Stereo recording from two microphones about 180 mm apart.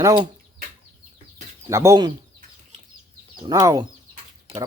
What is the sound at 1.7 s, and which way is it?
Speech, 15° right (ahead or behind).